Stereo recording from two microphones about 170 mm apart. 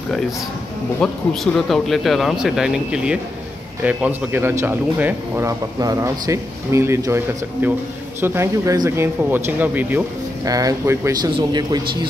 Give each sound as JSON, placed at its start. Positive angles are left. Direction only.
{"t": 1.0, "sound": "speech", "side_deg": 0}